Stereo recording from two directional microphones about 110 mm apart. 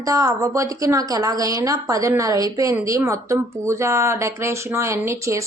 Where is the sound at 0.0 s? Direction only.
30° right (ahead or behind).